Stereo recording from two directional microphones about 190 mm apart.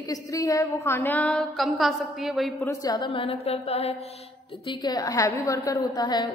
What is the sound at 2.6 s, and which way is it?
A woman's voice, 20° left (ahead or behind).